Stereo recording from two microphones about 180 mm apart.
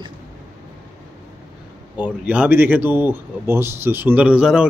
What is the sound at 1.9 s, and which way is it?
Speech, 5° right (ahead or behind).